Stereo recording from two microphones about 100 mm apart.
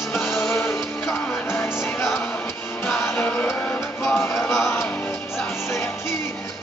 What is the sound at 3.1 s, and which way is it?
Music, 25° left (ahead or behind).